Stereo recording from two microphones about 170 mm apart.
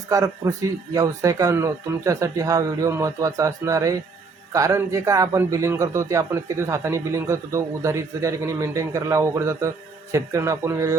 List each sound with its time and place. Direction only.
0.1 s a man's voice: 20° right (ahead or behind)